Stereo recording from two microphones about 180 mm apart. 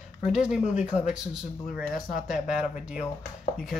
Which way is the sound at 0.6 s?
40° left (ahead or behind).